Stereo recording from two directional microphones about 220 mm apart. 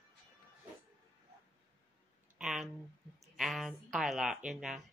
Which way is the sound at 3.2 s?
Centre (ahead or behind).